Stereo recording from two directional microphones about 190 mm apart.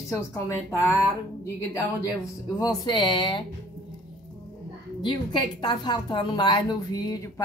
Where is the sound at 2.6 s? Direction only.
20° left (ahead or behind).